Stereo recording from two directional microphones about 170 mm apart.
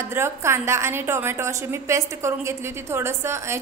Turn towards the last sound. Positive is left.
turn(degrees=-15)  # may be behind; listen again after turning